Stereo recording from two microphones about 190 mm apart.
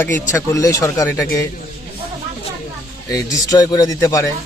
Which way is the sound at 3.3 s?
20° left (ahead or behind).